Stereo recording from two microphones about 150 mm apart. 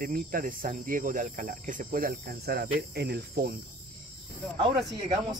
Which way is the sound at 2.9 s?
90° right.